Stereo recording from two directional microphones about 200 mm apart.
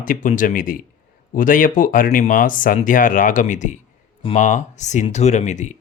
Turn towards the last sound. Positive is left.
turn(degrees=35)  # may be behind; listen again after turning